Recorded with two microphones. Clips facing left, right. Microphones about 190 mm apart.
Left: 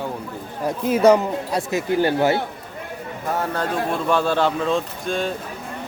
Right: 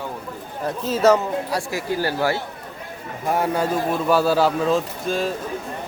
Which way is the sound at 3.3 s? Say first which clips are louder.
Right 3 dB; 10° right (ahead or behind).